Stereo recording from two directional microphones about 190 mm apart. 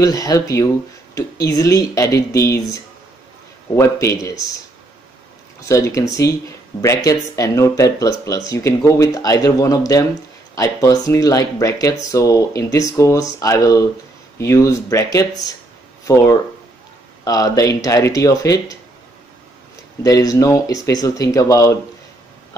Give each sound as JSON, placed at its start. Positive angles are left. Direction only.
{"t": 0.0, "sound": "speech", "side_deg": 15}
{"t": 3.7, "sound": "speech", "side_deg": 15}
{"t": 5.6, "sound": "speech", "side_deg": 15}
{"t": 17.2, "sound": "speech", "side_deg": 20}
{"t": 20.0, "sound": "speech", "side_deg": 20}